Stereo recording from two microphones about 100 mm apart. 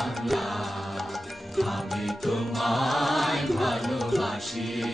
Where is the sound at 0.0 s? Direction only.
Centre (ahead or behind).